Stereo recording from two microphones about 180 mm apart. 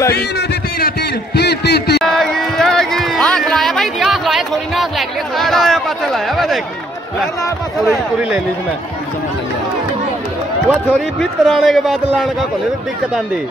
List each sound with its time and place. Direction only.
0.1 s a man's voice: 60° left (ahead or behind)
2.0 s a sound: centre (ahead or behind)
10.7 s a man's voice: centre (ahead or behind)